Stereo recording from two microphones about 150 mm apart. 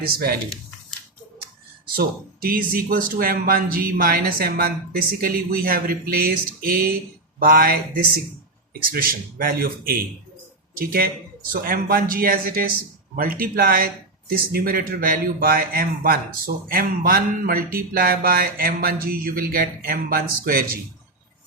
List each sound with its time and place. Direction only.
0.1 s speech: 90° right
2.0 s a man's voice: 75° right (ahead or behind)
8.9 s a man's voice: 70° right (ahead or behind)